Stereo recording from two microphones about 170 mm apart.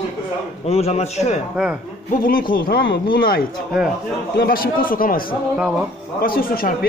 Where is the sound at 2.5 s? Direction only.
60° left (ahead or behind).